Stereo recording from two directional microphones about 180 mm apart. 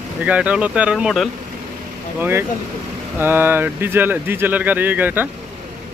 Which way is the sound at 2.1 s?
10° right (ahead or behind).